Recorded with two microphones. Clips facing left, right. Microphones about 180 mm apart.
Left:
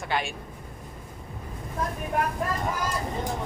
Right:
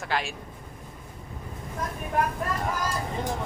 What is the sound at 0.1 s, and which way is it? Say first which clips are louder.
Speech: left 1 dB; centre (ahead or behind).